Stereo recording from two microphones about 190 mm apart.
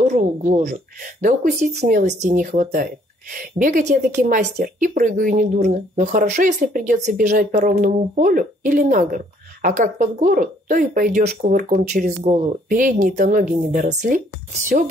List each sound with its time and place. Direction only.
0.0 s speech: 40° right (ahead or behind)
1.8 s speech: 45° right (ahead or behind)